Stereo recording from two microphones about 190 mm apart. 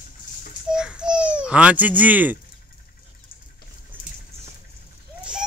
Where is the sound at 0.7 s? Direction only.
5° right (ahead or behind).